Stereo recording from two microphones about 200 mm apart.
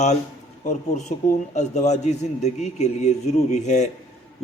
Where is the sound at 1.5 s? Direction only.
35° left (ahead or behind).